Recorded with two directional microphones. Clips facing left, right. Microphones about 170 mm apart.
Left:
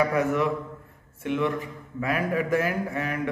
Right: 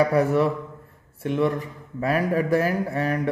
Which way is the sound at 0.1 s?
35° right (ahead or behind).